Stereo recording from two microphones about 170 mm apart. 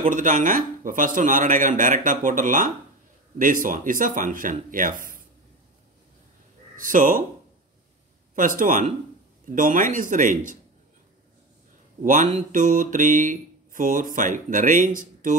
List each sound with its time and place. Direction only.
0.1 s speech: 50° right (ahead or behind)
6.8 s speech: 50° right (ahead or behind)
8.4 s speech: 50° right (ahead or behind)
12.0 s speech: 50° right (ahead or behind)